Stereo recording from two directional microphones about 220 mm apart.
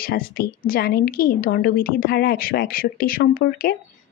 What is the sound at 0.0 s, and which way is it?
A woman's voice, 45° left (ahead or behind).